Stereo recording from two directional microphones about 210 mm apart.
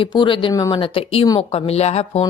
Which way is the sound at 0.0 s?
25° left (ahead or behind).